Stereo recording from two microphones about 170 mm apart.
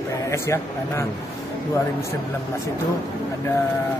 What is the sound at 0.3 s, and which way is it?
Speech, 15° left (ahead or behind).